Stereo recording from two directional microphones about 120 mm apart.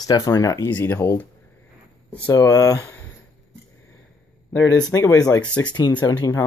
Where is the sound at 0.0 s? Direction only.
30° left (ahead or behind).